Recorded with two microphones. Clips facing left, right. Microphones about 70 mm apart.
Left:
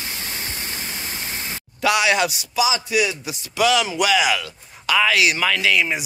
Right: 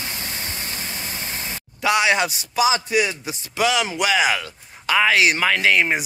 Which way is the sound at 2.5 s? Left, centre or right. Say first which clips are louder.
Right 2 dB; right.